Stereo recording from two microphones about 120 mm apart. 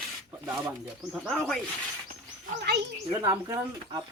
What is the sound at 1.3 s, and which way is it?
Speech, 5° left (ahead or behind).